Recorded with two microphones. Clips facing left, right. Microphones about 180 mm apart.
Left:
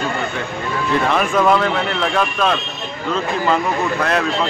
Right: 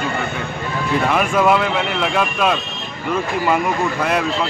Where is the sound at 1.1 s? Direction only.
5° right (ahead or behind).